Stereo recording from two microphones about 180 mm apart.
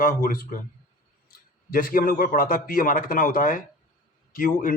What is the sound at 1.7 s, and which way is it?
A man's voice, 50° left (ahead or behind).